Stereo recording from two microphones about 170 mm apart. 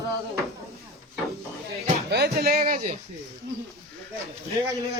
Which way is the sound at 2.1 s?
70° right (ahead or behind).